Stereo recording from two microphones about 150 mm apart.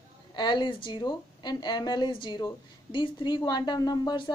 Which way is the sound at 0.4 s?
30° left (ahead or behind).